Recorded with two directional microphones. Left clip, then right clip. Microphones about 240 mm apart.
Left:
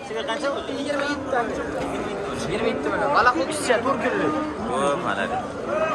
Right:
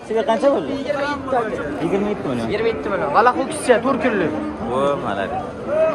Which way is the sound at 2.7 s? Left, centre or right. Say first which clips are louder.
Left 1 dB; right.